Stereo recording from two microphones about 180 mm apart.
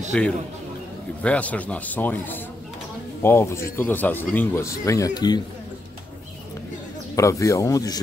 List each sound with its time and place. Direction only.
0.1 s a man's voice: 5° left (ahead or behind); by 5.4 s 20° left (ahead or behind)
7.2 s speech: 15° left (ahead or behind)